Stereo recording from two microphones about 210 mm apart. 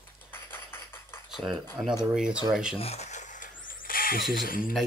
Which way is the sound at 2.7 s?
30° left (ahead or behind).